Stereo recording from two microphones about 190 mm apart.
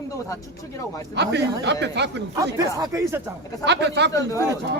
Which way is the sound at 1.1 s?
65° right (ahead or behind).